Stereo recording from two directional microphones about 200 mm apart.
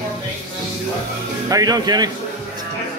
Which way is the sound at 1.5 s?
20° right (ahead or behind).